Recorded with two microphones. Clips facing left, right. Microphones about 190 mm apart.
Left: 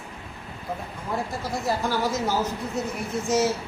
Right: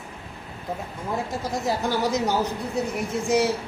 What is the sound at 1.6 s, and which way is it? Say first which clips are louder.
Speech: right 1 dB; 20° right (ahead or behind).